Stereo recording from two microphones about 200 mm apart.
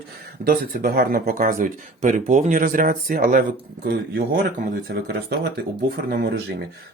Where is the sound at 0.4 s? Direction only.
45° right (ahead or behind).